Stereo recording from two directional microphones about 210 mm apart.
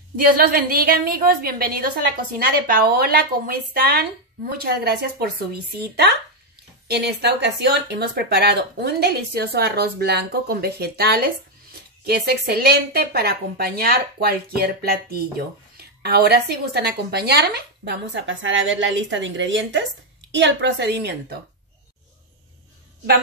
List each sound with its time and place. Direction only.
0.2 s speech: 45° right (ahead or behind)